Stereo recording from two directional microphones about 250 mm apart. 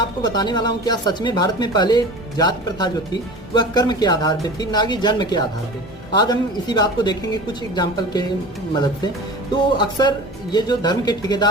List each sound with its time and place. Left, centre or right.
0.0 s speech: centre
9.7 s speech: centre